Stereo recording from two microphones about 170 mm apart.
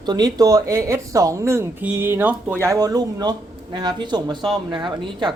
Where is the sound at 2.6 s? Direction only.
20° right (ahead or behind).